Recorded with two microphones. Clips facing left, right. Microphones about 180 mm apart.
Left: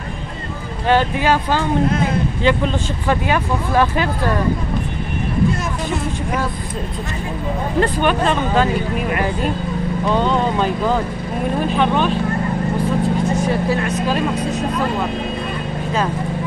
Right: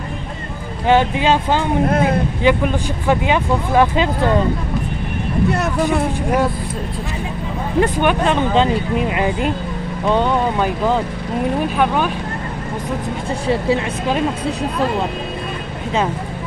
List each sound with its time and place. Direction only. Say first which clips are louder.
0.8 s speech: right 2 dB; 20° right (ahead or behind)
5.5 s speech: right 4 dB; 65° right (ahead or behind)
7.8 s speech: right 1 dB; 15° right (ahead or behind)
13.4 s speech: right 1 dB; 25° right (ahead or behind)